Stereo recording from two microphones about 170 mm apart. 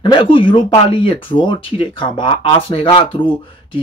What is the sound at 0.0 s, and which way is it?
Speech, 30° left (ahead or behind).